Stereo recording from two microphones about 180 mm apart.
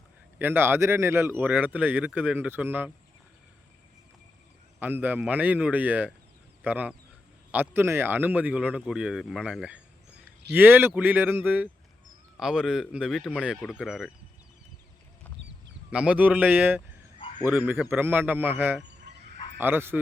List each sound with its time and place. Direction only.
0.3 s speech: 10° right (ahead or behind)
4.8 s speech: 10° right (ahead or behind)
15.9 s speech: 5° right (ahead or behind)
17.2 s a sound: 30° left (ahead or behind)
17.4 s speech: 10° right (ahead or behind)